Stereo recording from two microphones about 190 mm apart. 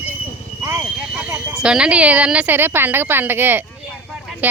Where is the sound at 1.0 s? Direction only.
5° right (ahead or behind).